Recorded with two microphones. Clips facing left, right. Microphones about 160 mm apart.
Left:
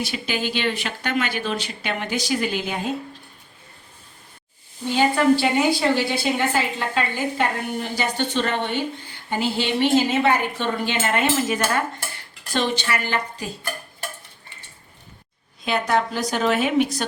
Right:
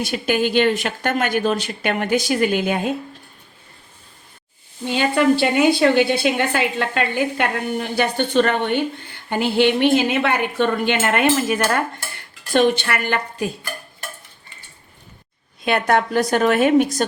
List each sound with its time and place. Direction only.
0.0 s speech: 50° right (ahead or behind)
4.9 s a woman's voice: 65° right (ahead or behind)
15.6 s speech: 60° right (ahead or behind); by 17.1 s 45° right (ahead or behind)